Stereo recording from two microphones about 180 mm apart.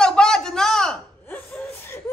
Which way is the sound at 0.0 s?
5° left (ahead or behind).